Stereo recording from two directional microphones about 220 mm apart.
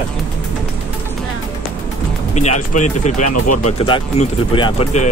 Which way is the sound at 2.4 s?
30° left (ahead or behind).